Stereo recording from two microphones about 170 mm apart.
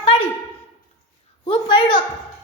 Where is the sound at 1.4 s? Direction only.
30° left (ahead or behind).